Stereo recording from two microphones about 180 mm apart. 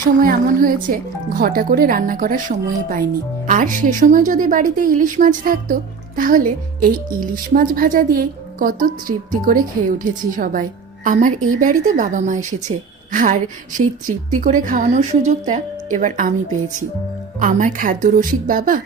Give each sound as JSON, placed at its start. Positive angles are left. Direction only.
{"t": 0.2, "sound": "a woman's voice", "side_deg": -50}
{"t": 17.4, "sound": "a woman's voice", "side_deg": -45}